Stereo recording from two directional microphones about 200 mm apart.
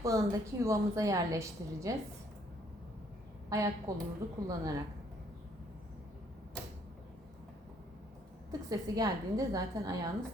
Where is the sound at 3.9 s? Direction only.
15° right (ahead or behind).